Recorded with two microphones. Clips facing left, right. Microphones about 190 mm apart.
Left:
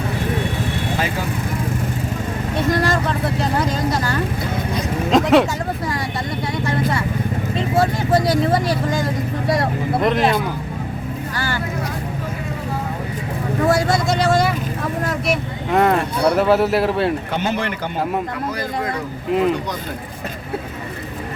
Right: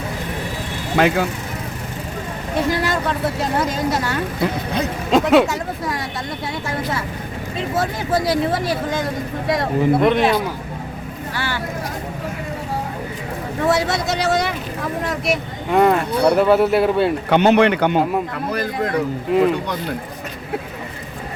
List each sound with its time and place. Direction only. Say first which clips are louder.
0.9 s speech: right 11 dB; 70° right (ahead or behind)
2.6 s speech: left 3 dB; centre (ahead or behind)
7.8 s speech: left 3 dB; centre (ahead or behind)
13.7 s speech: left 1 dB; centre (ahead or behind)
17.3 s speech: right 9 dB; 70° right (ahead or behind)